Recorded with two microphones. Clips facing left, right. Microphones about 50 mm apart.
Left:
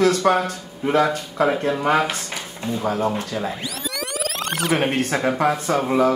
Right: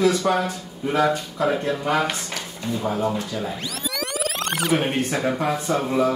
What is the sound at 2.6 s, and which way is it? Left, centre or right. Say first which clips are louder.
Speech: left 2 dB; left.